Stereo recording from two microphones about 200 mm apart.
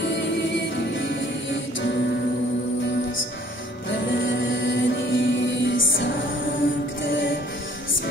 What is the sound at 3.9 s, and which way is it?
Music, 65° left (ahead or behind).